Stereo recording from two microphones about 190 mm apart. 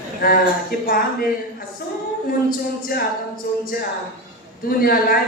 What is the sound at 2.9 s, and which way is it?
Speech, 50° left (ahead or behind).